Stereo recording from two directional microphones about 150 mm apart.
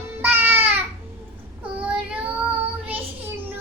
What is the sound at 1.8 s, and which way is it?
Child singing, 5° right (ahead or behind).